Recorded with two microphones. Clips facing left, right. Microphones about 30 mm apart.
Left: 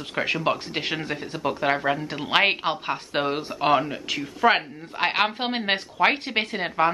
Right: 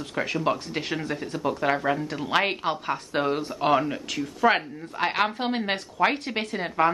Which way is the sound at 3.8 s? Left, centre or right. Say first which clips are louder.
Left 1 dB; centre.